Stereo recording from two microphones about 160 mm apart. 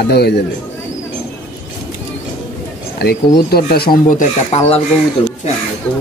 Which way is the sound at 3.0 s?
80° left.